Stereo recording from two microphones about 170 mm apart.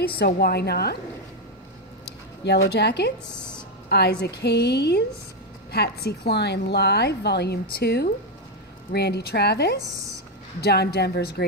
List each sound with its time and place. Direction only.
0.0 s a woman's voice: 70° left (ahead or behind)
2.0 s a woman's voice: 80° left